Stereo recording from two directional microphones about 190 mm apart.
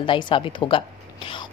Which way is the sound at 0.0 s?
25° left (ahead or behind).